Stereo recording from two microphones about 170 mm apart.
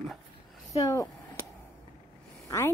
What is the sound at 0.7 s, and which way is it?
Speech, 15° left (ahead or behind).